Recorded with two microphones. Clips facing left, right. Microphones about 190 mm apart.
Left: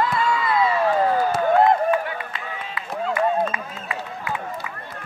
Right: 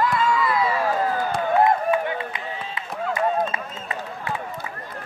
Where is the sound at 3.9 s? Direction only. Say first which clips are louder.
Left 1 dB; 35° right (ahead or behind).